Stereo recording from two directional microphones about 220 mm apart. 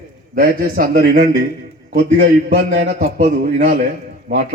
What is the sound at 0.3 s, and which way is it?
A man's voice, 40° right (ahead or behind).